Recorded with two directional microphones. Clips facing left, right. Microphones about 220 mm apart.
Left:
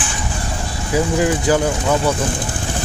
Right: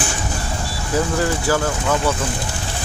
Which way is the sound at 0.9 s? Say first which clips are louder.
Left 3 dB; 15° left (ahead or behind).